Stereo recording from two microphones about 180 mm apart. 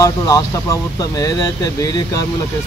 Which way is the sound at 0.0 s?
20° left (ahead or behind).